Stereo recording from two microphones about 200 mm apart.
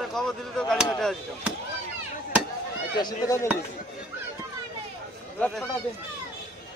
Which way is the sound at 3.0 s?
20° left (ahead or behind).